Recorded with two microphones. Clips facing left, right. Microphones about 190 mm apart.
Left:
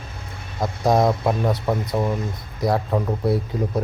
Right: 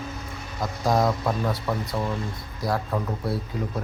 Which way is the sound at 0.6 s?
25° left (ahead or behind).